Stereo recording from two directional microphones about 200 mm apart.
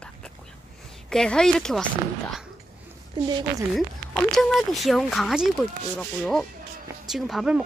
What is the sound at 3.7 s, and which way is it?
A woman's voice, centre (ahead or behind).